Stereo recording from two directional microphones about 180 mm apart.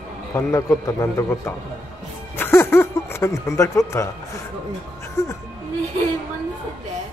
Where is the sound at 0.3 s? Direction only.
15° left (ahead or behind).